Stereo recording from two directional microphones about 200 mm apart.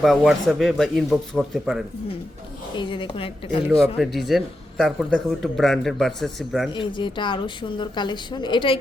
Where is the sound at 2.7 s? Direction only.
25° left (ahead or behind).